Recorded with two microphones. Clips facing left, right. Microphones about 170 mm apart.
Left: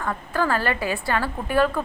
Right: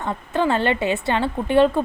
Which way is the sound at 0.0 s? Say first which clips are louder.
Right 3 dB; 25° right (ahead or behind).